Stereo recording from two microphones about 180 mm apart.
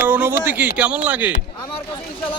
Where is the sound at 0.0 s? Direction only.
10° right (ahead or behind).